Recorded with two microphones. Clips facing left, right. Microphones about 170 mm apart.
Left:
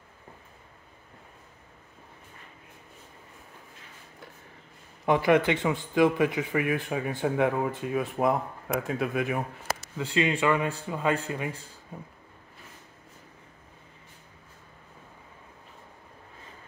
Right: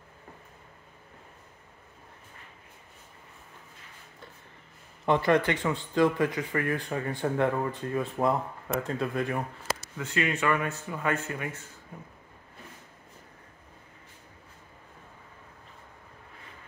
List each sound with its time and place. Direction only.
5.0 s speech: 10° left (ahead or behind)
9.9 s speech: 25° left (ahead or behind)